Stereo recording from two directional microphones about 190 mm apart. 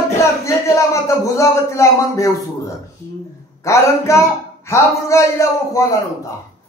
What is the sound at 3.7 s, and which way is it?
A man's voice, 15° left (ahead or behind).